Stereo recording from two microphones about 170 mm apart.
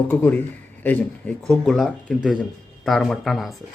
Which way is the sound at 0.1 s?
10° left (ahead or behind).